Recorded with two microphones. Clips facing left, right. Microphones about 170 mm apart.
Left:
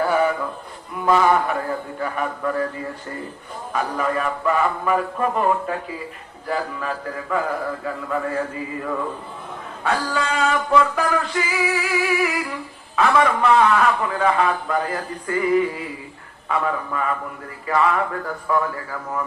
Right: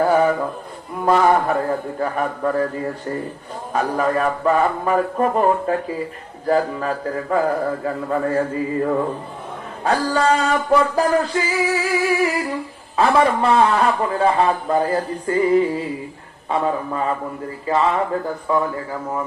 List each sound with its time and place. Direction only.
0.1 s a sound: 40° right (ahead or behind)
1.0 s a man's voice: 40° right (ahead or behind)
3.7 s a man's voice: 40° right (ahead or behind); by 19.2 s 25° right (ahead or behind)